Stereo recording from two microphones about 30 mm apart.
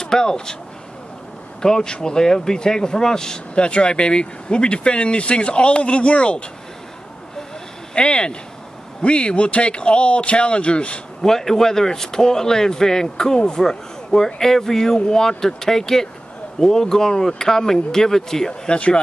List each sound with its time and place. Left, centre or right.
0.0 s speech: left
1.6 s speech: left
3.5 s speech: left
7.9 s speech: left
11.2 s speech: centre
18.5 s speech: left